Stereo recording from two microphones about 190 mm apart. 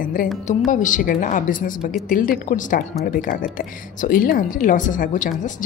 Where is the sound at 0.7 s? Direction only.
40° left (ahead or behind).